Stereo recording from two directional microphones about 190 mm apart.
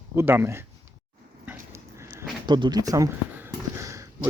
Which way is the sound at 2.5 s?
25° right (ahead or behind).